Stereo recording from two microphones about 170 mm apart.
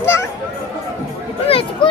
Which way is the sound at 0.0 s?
15° left (ahead or behind).